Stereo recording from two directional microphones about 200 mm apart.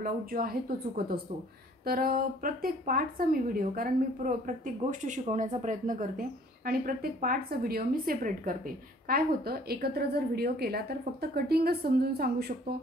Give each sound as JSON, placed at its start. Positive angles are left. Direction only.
{"t": 0.0, "sound": "a woman's voice", "side_deg": -45}